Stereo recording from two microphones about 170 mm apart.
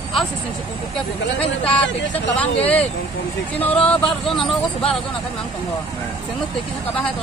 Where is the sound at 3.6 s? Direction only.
5° left (ahead or behind).